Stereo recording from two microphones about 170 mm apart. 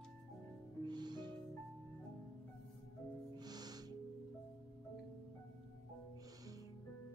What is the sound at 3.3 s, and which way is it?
Music, 25° right (ahead or behind).